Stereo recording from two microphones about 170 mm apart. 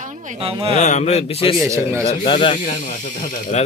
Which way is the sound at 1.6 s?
15° right (ahead or behind).